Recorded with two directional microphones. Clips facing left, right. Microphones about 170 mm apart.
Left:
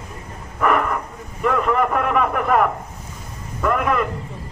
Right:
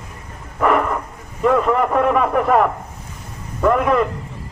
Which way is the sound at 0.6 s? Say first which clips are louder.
Right 2 dB; 20° right (ahead or behind).